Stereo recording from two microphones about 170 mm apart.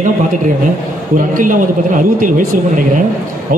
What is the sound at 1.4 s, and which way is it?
A man's voice, 50° right (ahead or behind).